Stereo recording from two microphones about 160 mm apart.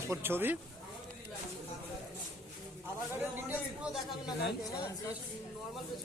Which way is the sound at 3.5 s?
5° right (ahead or behind).